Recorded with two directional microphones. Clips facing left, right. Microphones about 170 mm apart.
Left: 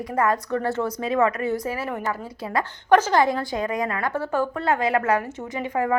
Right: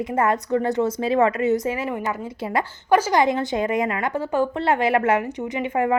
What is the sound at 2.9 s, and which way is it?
A woman's voice, 10° right (ahead or behind).